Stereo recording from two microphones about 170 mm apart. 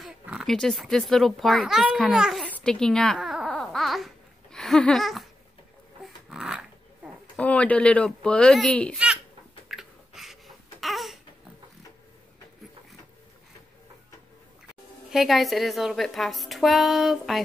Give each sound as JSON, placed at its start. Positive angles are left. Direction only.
{"t": 0.0, "sound": "a child's voice", "side_deg": 0}
{"t": 2.5, "sound": "babbling", "side_deg": 5}
{"t": 6.0, "sound": "dog", "side_deg": 0}
{"t": 7.3, "sound": "speech", "side_deg": 10}
{"t": 8.9, "sound": "a sound", "side_deg": -5}
{"t": 9.7, "sound": "babbling", "side_deg": 0}
{"t": 15.0, "sound": "a woman's voice", "side_deg": 0}